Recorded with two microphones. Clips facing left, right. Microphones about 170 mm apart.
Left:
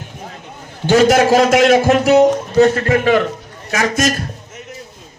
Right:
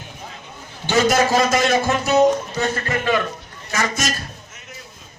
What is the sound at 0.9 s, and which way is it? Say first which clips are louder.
A man's voice: left 6 dB; 65° left (ahead or behind).